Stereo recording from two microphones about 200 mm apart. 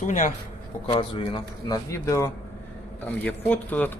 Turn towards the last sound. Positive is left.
turn(degrees=10)  # may be behind; listen again after turning